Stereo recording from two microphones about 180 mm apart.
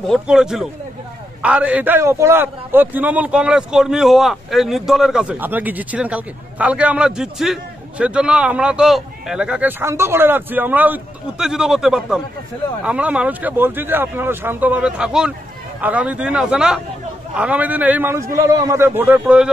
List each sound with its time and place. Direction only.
0.1 s a man's voice: 5° right (ahead or behind)